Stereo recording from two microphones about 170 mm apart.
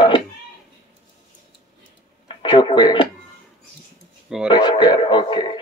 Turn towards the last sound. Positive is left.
turn(degrees=30)  # may be behind; listen again after turning